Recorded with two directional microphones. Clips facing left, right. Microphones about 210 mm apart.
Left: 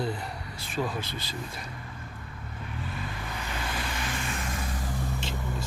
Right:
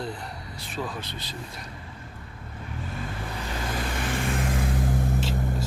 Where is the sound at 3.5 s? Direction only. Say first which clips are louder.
Right 4 dB; 35° right (ahead or behind); by 5.2 s 55° right (ahead or behind).